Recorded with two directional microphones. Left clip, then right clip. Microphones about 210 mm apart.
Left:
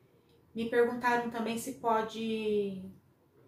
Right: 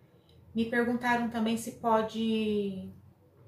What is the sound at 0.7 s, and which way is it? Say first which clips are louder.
A woman's voice: left 1 dB; 10° right (ahead or behind).